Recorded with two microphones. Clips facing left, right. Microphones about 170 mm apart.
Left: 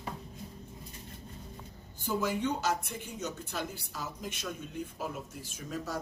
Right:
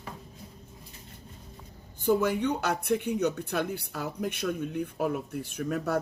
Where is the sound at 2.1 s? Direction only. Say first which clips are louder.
Right 6 dB; 60° right (ahead or behind).